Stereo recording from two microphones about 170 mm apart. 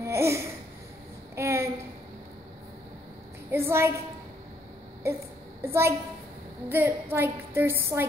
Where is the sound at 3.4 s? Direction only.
15° right (ahead or behind).